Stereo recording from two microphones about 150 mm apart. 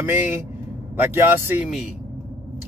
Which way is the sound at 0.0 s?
15° right (ahead or behind).